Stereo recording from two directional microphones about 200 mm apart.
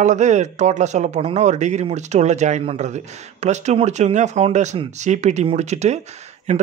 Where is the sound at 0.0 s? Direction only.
35° right (ahead or behind).